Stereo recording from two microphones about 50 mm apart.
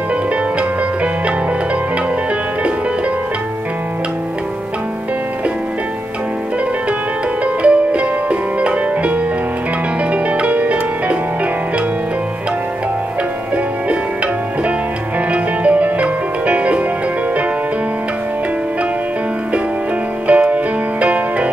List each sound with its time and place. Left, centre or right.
7.4 s music: right
13.8 s music: right
20.2 s music: right